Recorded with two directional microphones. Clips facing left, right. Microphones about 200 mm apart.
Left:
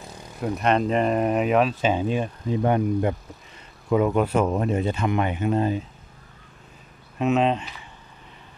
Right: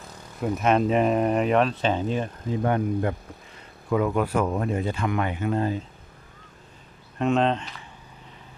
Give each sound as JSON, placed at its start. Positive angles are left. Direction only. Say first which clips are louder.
{"t": 0.4, "sound": "speech", "louder": "even", "side_deg": -5}
{"t": 7.2, "sound": "speech", "louder": "left 1 dB", "side_deg": 5}